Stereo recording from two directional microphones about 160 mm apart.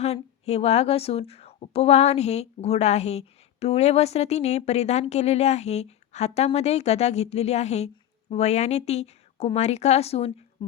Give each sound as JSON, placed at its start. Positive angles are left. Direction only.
{"t": 0.0, "sound": "a woman's voice", "side_deg": 40}
{"t": 10.6, "sound": "speech", "side_deg": 30}